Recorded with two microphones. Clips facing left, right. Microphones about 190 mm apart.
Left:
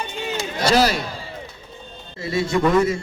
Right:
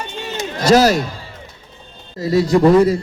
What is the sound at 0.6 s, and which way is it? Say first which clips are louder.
Speech: right 6 dB; 45° right (ahead or behind).